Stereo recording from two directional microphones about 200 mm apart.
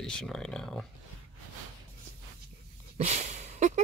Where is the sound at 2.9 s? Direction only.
35° right (ahead or behind).